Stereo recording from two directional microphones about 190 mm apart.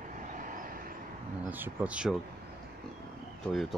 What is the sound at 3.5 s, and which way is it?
Speech, centre (ahead or behind).